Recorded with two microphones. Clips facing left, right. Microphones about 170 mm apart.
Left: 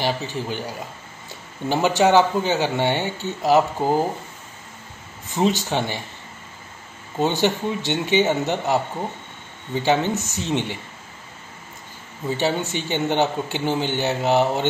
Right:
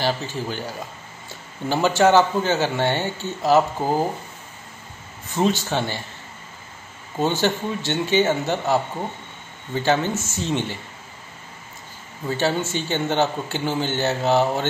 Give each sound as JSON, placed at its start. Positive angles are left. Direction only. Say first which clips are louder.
{"t": 0.0, "sound": "a man's voice", "louder": "even", "side_deg": 15}
{"t": 5.3, "sound": "a man's voice", "louder": "even", "side_deg": 15}
{"t": 7.2, "sound": "a man's voice", "louder": "left 1 dB", "side_deg": 15}
{"t": 9.8, "sound": "a man's voice", "louder": "left 1 dB", "side_deg": 15}
{"t": 12.3, "sound": "a man's voice", "louder": "even", "side_deg": 15}